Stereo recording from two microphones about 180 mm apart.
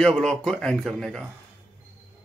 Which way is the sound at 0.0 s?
5° left (ahead or behind).